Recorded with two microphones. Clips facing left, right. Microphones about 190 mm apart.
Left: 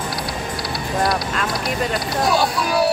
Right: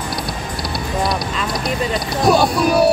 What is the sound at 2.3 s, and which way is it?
Music, 50° right (ahead or behind).